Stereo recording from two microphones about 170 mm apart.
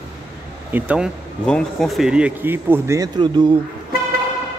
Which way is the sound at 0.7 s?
10° right (ahead or behind).